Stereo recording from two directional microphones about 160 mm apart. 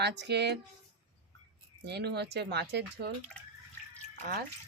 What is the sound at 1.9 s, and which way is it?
Speech, 90° right.